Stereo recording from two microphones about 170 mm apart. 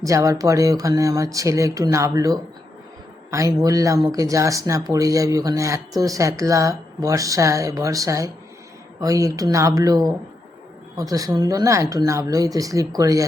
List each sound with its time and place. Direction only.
0.0 s speech: 20° right (ahead or behind)